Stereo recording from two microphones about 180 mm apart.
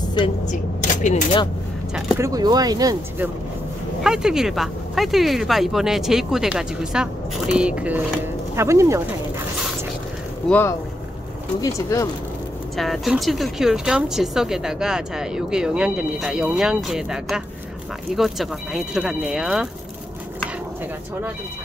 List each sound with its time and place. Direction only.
0.5 s speech: 45° left (ahead or behind)
2.1 s speech: 20° right (ahead or behind)
4.0 s speech: 5° right (ahead or behind)
11.6 s speech: 20° left (ahead or behind)
12.7 s speech: centre (ahead or behind)